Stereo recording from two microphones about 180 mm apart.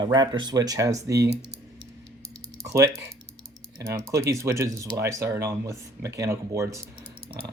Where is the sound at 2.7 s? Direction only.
15° right (ahead or behind).